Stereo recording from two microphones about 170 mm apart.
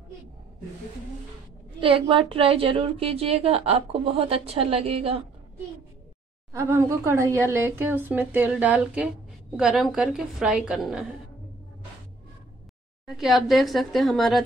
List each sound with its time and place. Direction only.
1.8 s a woman's voice: 30° right (ahead or behind)
6.5 s a woman's voice: 15° right (ahead or behind)
13.0 s a woman's voice: centre (ahead or behind)